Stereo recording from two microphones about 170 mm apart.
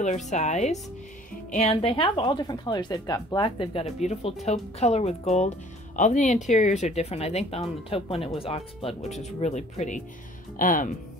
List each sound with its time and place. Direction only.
0.0 s speech: 45° left (ahead or behind)